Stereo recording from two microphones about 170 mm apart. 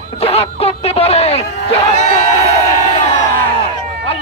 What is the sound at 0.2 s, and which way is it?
A man's voice, 35° left (ahead or behind).